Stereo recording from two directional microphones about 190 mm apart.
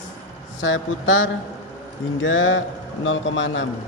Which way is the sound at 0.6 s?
90° left.